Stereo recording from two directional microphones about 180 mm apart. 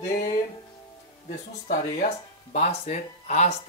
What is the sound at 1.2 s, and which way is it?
Speech, 45° left (ahead or behind).